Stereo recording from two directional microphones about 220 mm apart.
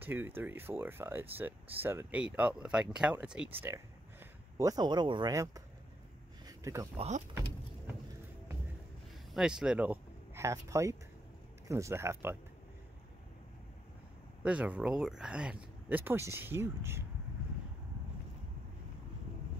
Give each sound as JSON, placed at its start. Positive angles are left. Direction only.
{"t": 0.0, "sound": "speech", "side_deg": -10}
{"t": 6.4, "sound": "a sound", "side_deg": -15}
{"t": 7.0, "sound": "speech", "side_deg": -30}
{"t": 9.3, "sound": "speech", "side_deg": -5}
{"t": 14.4, "sound": "speech", "side_deg": -5}